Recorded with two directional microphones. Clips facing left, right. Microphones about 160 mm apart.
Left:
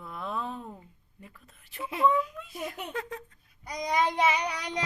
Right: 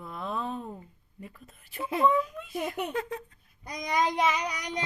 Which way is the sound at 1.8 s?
40° right (ahead or behind).